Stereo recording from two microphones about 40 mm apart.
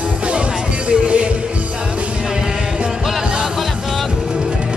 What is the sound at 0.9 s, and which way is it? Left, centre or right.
Music, right.